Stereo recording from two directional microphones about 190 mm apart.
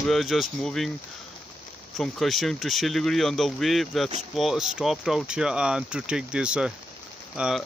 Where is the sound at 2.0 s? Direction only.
Centre (ahead or behind).